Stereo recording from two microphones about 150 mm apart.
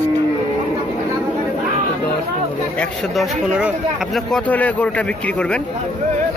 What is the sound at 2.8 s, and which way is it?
Speech, centre (ahead or behind).